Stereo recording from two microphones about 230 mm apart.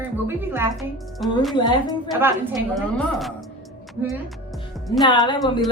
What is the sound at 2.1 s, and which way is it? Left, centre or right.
Speech, centre.